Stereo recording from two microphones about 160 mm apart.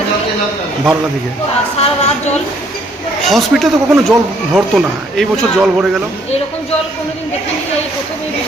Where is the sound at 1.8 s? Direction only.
45° left (ahead or behind).